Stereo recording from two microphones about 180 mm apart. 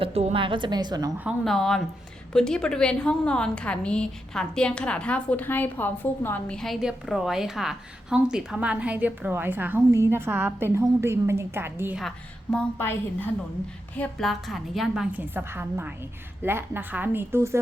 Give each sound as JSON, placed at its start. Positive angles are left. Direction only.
{"t": 0.0, "sound": "a woman's voice", "side_deg": -35}
{"t": 1.2, "sound": "a woman's voice", "side_deg": 0}
{"t": 11.9, "sound": "a woman's voice", "side_deg": 0}